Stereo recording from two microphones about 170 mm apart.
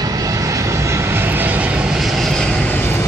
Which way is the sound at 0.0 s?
20° right (ahead or behind).